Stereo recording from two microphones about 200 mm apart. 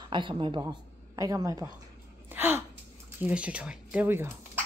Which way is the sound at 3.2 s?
5° right (ahead or behind).